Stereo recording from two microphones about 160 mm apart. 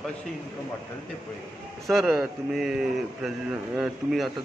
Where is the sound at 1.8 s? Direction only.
Centre (ahead or behind).